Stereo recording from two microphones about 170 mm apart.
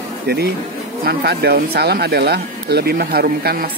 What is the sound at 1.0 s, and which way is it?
Speech, 65° right (ahead or behind).